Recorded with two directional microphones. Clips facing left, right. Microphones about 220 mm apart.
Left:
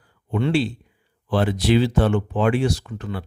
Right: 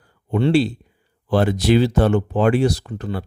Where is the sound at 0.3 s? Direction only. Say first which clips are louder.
Right 4 dB; 35° right (ahead or behind).